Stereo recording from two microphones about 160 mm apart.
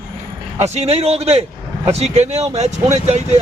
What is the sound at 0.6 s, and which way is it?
Speech, 40° right (ahead or behind).